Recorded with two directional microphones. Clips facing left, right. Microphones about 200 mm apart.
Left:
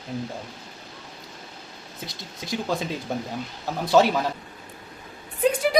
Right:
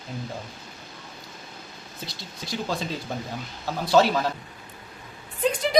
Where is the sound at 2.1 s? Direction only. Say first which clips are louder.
Left 3 dB; 20° left (ahead or behind).